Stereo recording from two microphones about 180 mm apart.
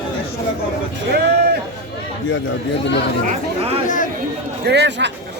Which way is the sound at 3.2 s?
35° right (ahead or behind).